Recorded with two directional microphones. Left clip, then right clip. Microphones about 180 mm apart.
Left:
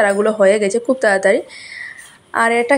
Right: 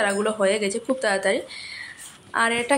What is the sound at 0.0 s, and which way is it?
A woman's voice, 25° left (ahead or behind).